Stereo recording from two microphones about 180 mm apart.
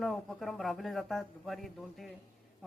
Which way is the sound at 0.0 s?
Centre (ahead or behind).